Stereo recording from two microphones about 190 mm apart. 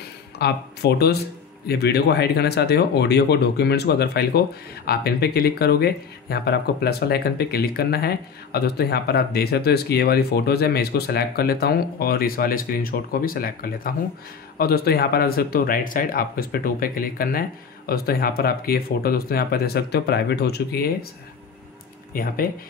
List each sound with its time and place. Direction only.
0.4 s speech: 60° left (ahead or behind)
22.1 s speech: 50° left (ahead or behind)